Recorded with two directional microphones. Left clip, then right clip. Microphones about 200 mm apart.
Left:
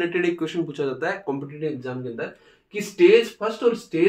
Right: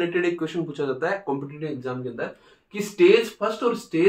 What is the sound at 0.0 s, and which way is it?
Speech, 20° left (ahead or behind).